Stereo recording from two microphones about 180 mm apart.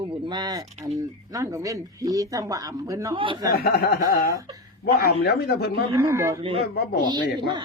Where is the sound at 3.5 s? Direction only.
60° left (ahead or behind).